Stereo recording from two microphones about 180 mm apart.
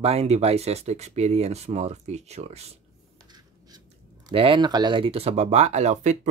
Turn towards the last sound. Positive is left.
turn(degrees=-40)  # may be behind; listen again after turning